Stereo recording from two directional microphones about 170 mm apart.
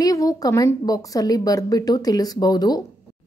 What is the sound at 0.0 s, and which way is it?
A woman's voice, 20° left (ahead or behind).